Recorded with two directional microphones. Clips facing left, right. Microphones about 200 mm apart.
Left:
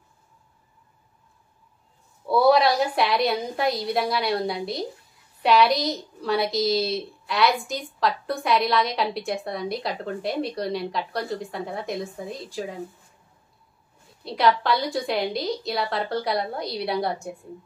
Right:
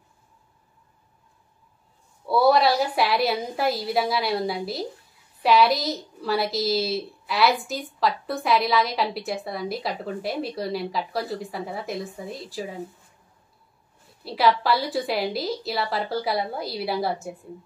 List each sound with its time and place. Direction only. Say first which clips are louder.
2.2 s a woman's voice: left 1 dB; centre (ahead or behind)
14.2 s a woman's voice: even; 5° right (ahead or behind)